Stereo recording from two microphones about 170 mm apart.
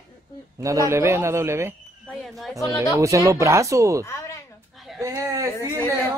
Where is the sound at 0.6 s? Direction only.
20° right (ahead or behind).